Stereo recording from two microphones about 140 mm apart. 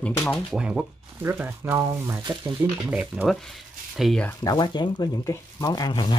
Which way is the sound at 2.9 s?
5° right (ahead or behind).